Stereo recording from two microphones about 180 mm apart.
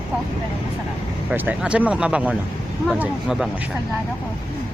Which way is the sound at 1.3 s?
5° right (ahead or behind).